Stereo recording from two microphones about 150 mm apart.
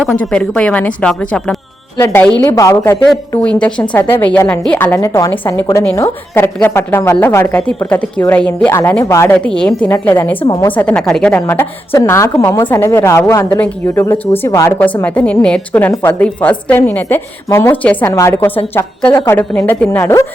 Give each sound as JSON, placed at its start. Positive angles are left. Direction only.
{"t": 0.1, "sound": "a woman's voice", "side_deg": 10}
{"t": 2.0, "sound": "a woman's voice", "side_deg": 20}
{"t": 3.3, "sound": "a woman's voice", "side_deg": 10}
{"t": 10.4, "sound": "a woman's voice", "side_deg": 25}
{"t": 10.7, "sound": "a woman's voice", "side_deg": 10}